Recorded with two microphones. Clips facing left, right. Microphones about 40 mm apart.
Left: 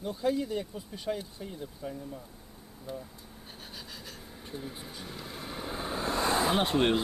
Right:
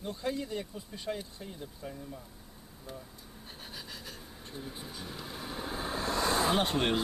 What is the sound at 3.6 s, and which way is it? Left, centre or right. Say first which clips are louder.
Vehicle: even; centre.